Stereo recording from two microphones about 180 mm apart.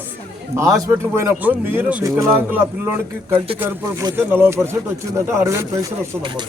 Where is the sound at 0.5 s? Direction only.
15° right (ahead or behind).